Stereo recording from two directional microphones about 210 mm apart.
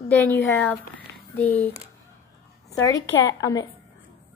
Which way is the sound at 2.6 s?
15° left (ahead or behind).